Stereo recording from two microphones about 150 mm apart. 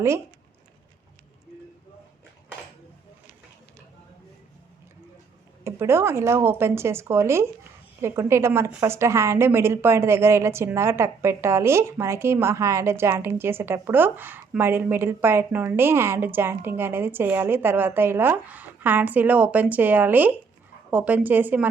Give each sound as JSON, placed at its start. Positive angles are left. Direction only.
{"t": 5.6, "sound": "a woman's voice", "side_deg": -15}